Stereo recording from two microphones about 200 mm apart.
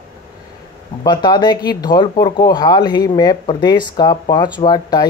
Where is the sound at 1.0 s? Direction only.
20° left (ahead or behind).